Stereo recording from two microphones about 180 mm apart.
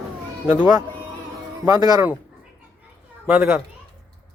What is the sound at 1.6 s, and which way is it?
Speech, 20° right (ahead or behind).